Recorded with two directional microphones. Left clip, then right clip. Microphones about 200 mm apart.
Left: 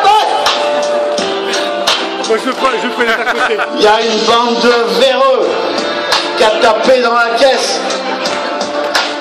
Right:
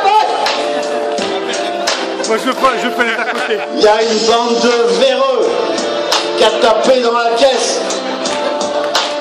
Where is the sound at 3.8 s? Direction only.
30° left (ahead or behind).